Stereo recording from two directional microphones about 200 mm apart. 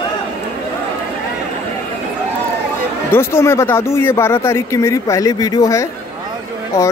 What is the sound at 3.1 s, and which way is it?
Speech, 10° left (ahead or behind).